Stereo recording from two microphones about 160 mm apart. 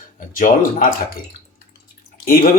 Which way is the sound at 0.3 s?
55° left (ahead or behind).